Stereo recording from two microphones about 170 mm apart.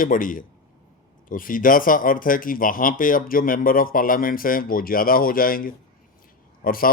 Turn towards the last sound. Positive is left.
turn(degrees=60)  # may be behind; listen again after turning